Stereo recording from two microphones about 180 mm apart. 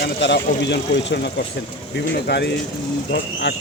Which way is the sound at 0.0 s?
70° left (ahead or behind).